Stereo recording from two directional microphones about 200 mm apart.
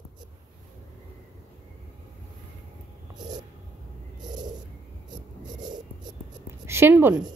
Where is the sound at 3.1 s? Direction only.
20° right (ahead or behind).